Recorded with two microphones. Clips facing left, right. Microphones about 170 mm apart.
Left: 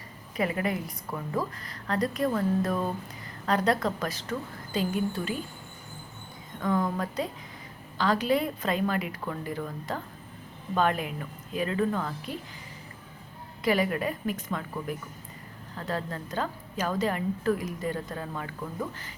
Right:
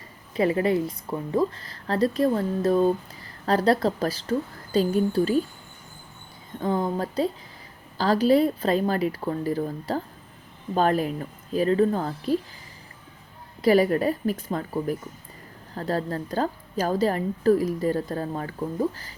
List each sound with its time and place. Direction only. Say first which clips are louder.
0.3 s a woman's voice: right 7 dB; 30° right (ahead or behind)
6.6 s a woman's voice: right 3 dB; 30° right (ahead or behind)
13.6 s a woman's voice: right 7 dB; 35° right (ahead or behind)